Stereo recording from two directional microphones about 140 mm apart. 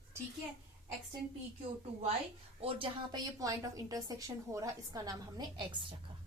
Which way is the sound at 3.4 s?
25° right (ahead or behind).